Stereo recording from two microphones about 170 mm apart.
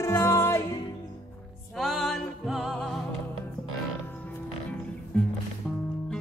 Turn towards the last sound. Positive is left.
turn(degrees=5)  # may be behind; listen again after turning